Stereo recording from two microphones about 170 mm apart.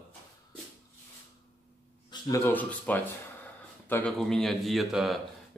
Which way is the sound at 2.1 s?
20° left (ahead or behind).